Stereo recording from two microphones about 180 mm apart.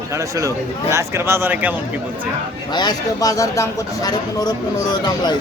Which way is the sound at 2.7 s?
25° left (ahead or behind).